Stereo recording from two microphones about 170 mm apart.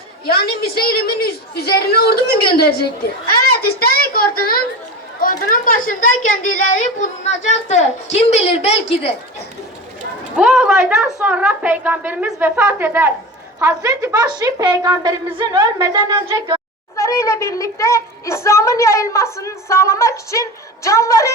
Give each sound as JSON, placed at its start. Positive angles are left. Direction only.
{"t": 0.3, "sound": "a woman's voice", "side_deg": 65}
{"t": 3.4, "sound": "a sound", "side_deg": 65}
{"t": 5.2, "sound": "a woman's voice", "side_deg": 55}
{"t": 10.3, "sound": "a woman's voice", "side_deg": -5}
{"t": 17.0, "sound": "a woman's voice", "side_deg": 15}